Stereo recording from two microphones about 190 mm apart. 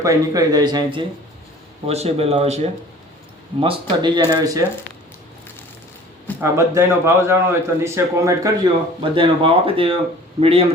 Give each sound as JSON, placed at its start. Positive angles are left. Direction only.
{"t": 0.0, "sound": "a man's voice", "side_deg": -20}
{"t": 6.4, "sound": "a man's voice", "side_deg": -15}